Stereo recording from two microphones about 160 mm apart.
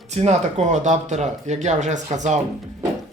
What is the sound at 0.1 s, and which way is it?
Speech, 40° right (ahead or behind).